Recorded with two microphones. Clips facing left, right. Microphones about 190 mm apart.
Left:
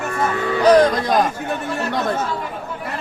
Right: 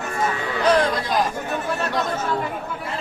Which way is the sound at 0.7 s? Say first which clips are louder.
Left 6 dB; 40° left (ahead or behind).